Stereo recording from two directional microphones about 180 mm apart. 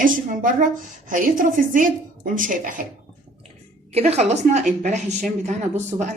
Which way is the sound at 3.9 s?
35° right (ahead or behind).